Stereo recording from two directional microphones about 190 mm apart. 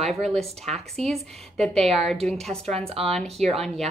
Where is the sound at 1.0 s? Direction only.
Centre (ahead or behind).